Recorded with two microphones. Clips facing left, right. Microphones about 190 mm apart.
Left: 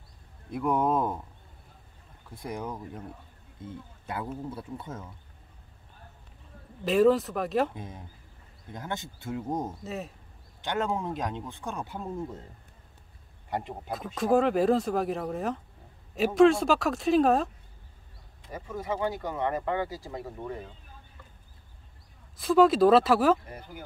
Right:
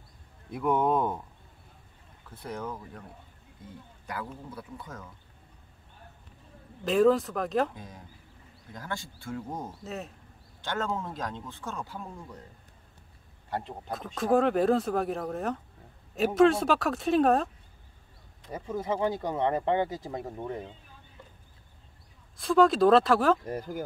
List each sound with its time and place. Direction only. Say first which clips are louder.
0.5 s speech: even; centre (ahead or behind)
2.2 s speech: left 1 dB; 15° left (ahead or behind)
6.8 s speech: left 1 dB; centre (ahead or behind)
7.7 s speech: left 4 dB; 25° left (ahead or behind)
9.8 s speech: left 2 dB; centre (ahead or behind)
10.6 s speech: left 2 dB; 15° left (ahead or behind)
13.5 s speech: left 1 dB; 15° left (ahead or behind)
13.9 s speech: left 1 dB; centre (ahead or behind)
18.5 s speech: right 2 dB; 25° right (ahead or behind)
22.4 s speech: left 1 dB; 5° left (ahead or behind)
23.4 s speech: right 9 dB; 40° right (ahead or behind)